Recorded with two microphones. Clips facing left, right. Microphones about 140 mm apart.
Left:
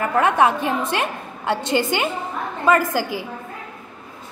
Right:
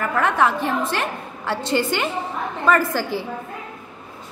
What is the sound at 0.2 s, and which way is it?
A woman's voice, 15° left (ahead or behind).